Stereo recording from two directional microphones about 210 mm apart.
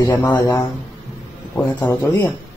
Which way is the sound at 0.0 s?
15° left (ahead or behind).